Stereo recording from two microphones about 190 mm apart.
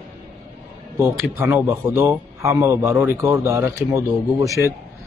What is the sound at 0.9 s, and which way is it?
Speech, 10° right (ahead or behind).